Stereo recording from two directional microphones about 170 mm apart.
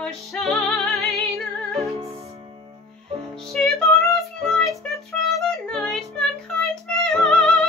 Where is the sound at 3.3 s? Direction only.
Centre (ahead or behind).